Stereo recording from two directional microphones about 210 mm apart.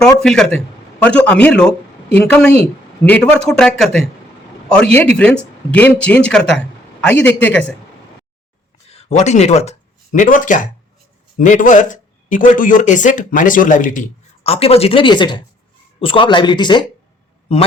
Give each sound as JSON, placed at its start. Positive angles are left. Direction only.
{"t": 0.2, "sound": "speech", "side_deg": 0}
{"t": 8.9, "sound": "speech", "side_deg": 30}
{"t": 14.4, "sound": "speech", "side_deg": 30}